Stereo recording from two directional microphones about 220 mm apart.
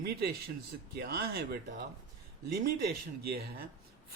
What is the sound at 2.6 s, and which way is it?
Speech, 45° right (ahead or behind).